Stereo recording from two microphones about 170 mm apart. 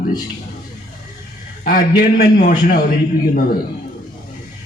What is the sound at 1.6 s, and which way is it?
A man's voice, 60° left (ahead or behind).